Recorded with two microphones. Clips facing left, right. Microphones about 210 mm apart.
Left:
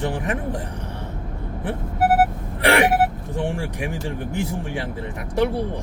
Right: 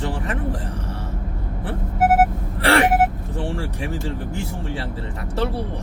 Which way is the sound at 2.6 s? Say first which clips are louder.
Even; 15° left (ahead or behind).